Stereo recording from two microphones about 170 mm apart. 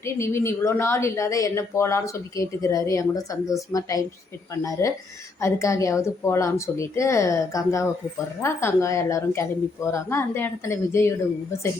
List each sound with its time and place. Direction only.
0.0 s speech: 15° left (ahead or behind)